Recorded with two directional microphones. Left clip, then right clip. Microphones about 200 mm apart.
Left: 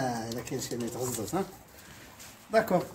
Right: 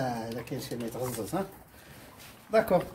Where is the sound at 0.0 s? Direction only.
30° right (ahead or behind).